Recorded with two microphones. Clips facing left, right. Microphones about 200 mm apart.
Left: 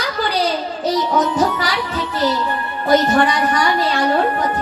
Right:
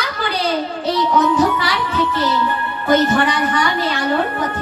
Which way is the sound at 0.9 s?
40° left (ahead or behind).